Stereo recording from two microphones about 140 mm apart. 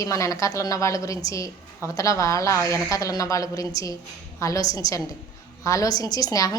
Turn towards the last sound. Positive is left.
turn(degrees=25)  # may be behind; listen again after turning